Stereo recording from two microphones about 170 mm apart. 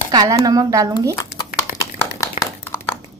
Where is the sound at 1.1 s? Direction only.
20° left (ahead or behind).